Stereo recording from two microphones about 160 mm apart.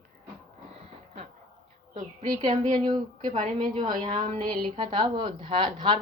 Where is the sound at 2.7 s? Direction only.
25° right (ahead or behind).